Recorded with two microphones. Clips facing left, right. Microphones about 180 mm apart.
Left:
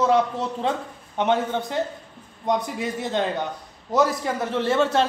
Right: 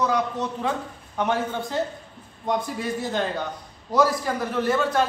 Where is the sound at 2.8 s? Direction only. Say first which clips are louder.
Left 1 dB; 20° left (ahead or behind).